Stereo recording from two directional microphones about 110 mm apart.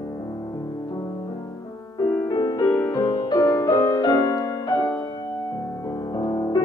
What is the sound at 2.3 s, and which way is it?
Music, 35° left (ahead or behind).